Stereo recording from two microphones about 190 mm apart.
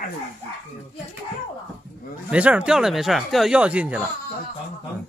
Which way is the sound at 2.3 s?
5° right (ahead or behind).